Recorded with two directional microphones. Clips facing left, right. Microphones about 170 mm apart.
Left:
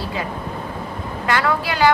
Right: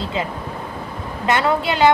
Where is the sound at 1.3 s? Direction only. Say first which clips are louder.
Right 2 dB; 25° right (ahead or behind).